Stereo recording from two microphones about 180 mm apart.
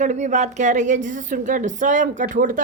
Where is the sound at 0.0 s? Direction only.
40° right (ahead or behind).